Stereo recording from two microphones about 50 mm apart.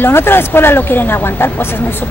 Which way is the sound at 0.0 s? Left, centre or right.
Left.